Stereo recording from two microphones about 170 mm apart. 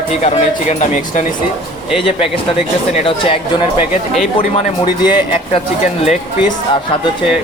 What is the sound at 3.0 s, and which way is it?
Speech, 30° left (ahead or behind).